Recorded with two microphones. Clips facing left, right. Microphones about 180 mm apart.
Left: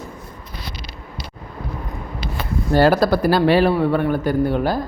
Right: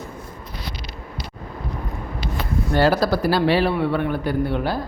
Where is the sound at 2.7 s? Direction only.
50° left (ahead or behind).